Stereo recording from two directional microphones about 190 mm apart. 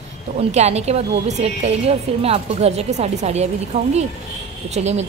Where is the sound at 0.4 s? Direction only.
35° right (ahead or behind).